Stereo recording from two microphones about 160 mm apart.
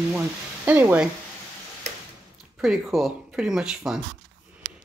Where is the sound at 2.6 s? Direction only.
Centre (ahead or behind).